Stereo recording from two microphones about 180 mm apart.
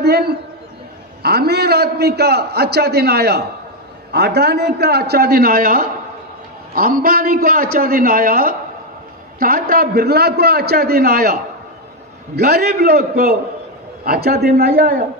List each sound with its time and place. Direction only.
0.0 s a man's voice: 60° right (ahead or behind)
12.4 s a man's voice: 60° right (ahead or behind)